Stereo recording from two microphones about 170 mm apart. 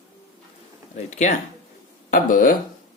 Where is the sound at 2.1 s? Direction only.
55° left (ahead or behind).